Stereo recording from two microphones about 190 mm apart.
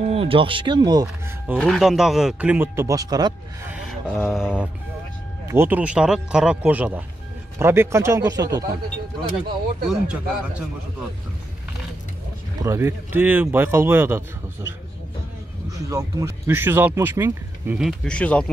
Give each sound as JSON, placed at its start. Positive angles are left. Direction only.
{"t": 0.0, "sound": "speech", "side_deg": -30}
{"t": 1.6, "sound": "speech", "side_deg": 0}
{"t": 3.7, "sound": "mantra", "side_deg": 0}
{"t": 5.5, "sound": "speech", "side_deg": -10}
{"t": 9.8, "sound": "speech", "side_deg": -5}
{"t": 12.5, "sound": "speech", "side_deg": -15}
{"t": 15.7, "sound": "speech", "side_deg": -15}